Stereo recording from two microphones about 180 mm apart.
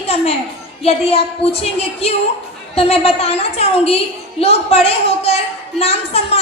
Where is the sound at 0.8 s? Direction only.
35° left (ahead or behind).